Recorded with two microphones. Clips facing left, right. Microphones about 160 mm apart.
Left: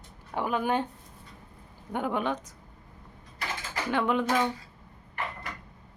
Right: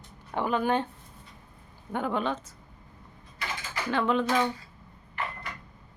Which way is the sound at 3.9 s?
15° left (ahead or behind).